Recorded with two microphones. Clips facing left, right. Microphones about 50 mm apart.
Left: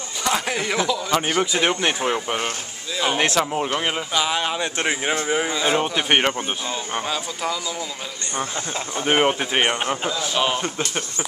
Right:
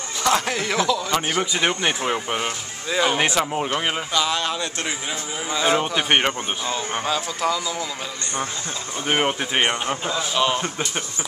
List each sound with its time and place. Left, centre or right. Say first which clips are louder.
0.2 s a man's voice: right 2 dB; centre
4.1 s speech: even; centre
5.1 s a man's voice: left 8 dB; left
5.5 s a man's voice: even; centre
9.0 s speech: left 3 dB; centre